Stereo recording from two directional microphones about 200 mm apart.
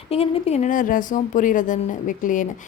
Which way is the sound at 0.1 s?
30° left (ahead or behind).